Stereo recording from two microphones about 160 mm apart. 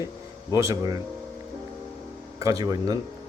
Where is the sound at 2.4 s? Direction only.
20° right (ahead or behind).